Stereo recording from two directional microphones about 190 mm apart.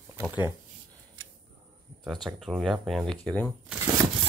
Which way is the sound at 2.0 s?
Centre (ahead or behind).